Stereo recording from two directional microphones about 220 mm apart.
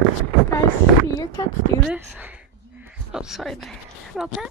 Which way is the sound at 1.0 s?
15° left (ahead or behind).